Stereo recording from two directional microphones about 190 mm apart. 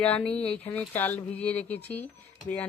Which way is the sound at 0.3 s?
30° left (ahead or behind).